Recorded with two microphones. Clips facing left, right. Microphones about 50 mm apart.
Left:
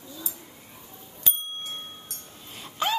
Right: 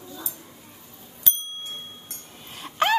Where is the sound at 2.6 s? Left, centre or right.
Right.